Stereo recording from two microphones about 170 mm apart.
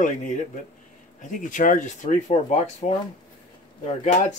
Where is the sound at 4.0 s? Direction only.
45° left (ahead or behind).